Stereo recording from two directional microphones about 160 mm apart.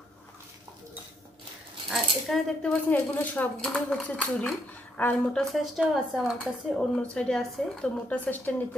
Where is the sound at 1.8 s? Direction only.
Centre (ahead or behind).